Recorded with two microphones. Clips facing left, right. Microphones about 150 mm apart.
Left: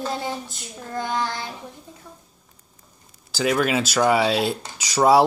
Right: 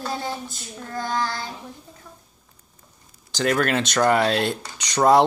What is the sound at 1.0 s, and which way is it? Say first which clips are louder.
Speech: even; 15° left (ahead or behind).